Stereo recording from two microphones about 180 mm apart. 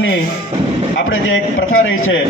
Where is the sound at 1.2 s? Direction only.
90° left.